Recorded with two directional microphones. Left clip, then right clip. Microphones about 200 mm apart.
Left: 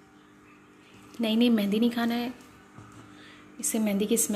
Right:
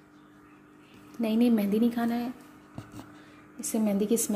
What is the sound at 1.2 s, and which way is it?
Speech, 5° right (ahead or behind).